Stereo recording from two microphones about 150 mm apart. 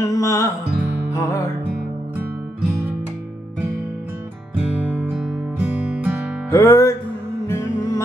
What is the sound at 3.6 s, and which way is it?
Music, 15° right (ahead or behind).